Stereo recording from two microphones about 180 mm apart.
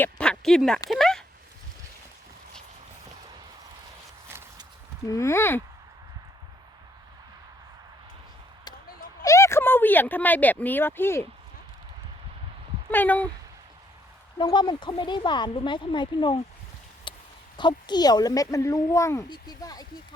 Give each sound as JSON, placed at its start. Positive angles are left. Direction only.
{"t": 0.0, "sound": "speech", "side_deg": 5}
{"t": 0.9, "sound": "a sound", "side_deg": 0}
{"t": 5.0, "sound": "speech", "side_deg": 15}
{"t": 9.2, "sound": "speech", "side_deg": 15}
{"t": 12.9, "sound": "speech", "side_deg": 10}
{"t": 14.3, "sound": "speech", "side_deg": 25}
{"t": 17.1, "sound": "a sound", "side_deg": 25}
{"t": 17.6, "sound": "speech", "side_deg": 25}